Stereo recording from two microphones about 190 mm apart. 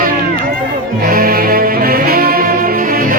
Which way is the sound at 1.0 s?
50° right (ahead or behind).